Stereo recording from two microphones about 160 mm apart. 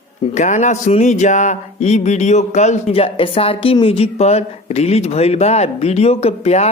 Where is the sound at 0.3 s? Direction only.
50° left (ahead or behind).